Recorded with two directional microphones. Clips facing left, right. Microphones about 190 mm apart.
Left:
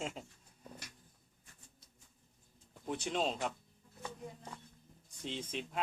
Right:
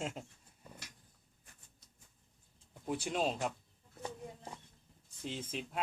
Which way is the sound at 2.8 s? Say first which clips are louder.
Right 1 dB; 5° right (ahead or behind).